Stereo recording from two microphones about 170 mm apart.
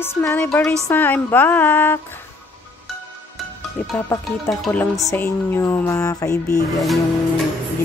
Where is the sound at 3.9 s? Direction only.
10° left (ahead or behind).